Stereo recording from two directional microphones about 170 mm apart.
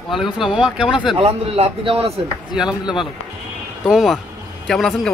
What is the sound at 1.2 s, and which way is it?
Speech, 35° right (ahead or behind).